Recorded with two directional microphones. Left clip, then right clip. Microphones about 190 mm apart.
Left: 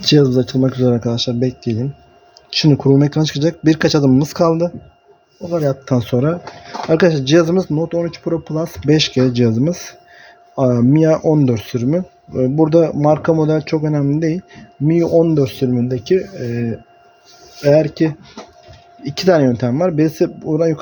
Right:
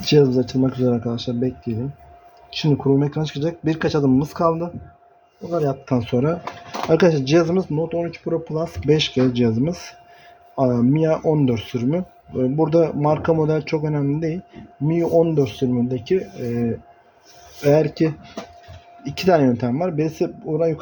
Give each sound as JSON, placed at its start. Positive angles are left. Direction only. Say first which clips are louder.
{"t": 0.0, "sound": "speech", "louder": "left 3 dB", "side_deg": 35}
{"t": 6.9, "sound": "speech", "louder": "left 4 dB", "side_deg": 25}
{"t": 17.6, "sound": "speech", "louder": "left 4 dB", "side_deg": 25}